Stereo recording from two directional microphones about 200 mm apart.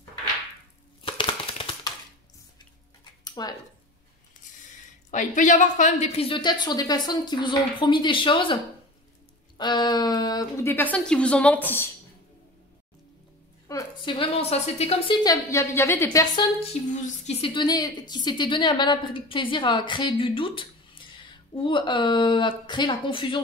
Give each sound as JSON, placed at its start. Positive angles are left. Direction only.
{"t": 1.0, "sound": "a sound", "side_deg": 25}
{"t": 3.3, "sound": "a sound", "side_deg": 20}
{"t": 5.1, "sound": "a woman's voice", "side_deg": 40}
{"t": 9.6, "sound": "a woman's voice", "side_deg": 20}
{"t": 13.7, "sound": "a woman's voice", "side_deg": 20}
{"t": 15.2, "sound": "a woman's voice", "side_deg": 15}
{"t": 16.5, "sound": "a woman's voice", "side_deg": 35}